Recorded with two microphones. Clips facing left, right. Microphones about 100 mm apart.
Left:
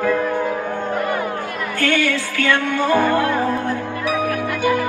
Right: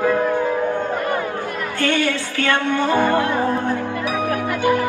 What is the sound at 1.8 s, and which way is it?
Music, 30° right (ahead or behind).